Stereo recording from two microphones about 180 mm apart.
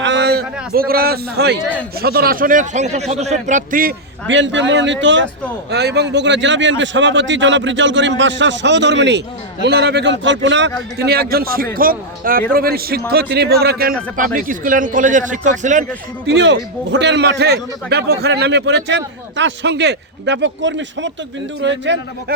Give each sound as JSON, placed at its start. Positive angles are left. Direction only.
{"t": 0.0, "sound": "a sound", "side_deg": -70}
{"t": 2.0, "sound": "a man's voice", "side_deg": -60}
{"t": 4.3, "sound": "a man's voice", "side_deg": -90}
{"t": 5.7, "sound": "a man's voice", "side_deg": -70}
{"t": 16.2, "sound": "a man's voice", "side_deg": -85}